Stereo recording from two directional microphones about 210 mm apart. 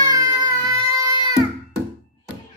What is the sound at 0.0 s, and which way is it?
Baby cry, 15° right (ahead or behind).